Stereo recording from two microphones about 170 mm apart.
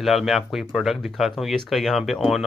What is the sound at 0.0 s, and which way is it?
Speech, centre (ahead or behind).